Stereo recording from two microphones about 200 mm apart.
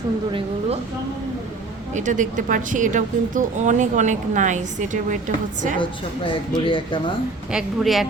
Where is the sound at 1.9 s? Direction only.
35° right (ahead or behind).